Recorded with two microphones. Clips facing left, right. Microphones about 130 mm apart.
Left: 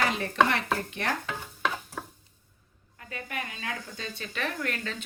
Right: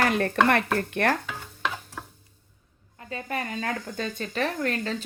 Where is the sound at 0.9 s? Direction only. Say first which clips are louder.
Right 8 dB; 55° right (ahead or behind).